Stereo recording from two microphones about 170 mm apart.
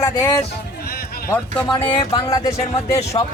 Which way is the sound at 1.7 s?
25° left (ahead or behind).